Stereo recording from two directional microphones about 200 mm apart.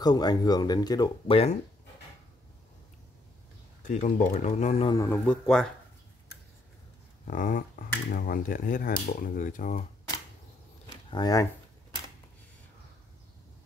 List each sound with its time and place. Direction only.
0.0 s speech: 20° left (ahead or behind)
3.8 s speech: 40° left (ahead or behind)
4.9 s a man's voice: 10° left (ahead or behind)
7.2 s speech: 45° left (ahead or behind)
11.1 s speech: 20° left (ahead or behind)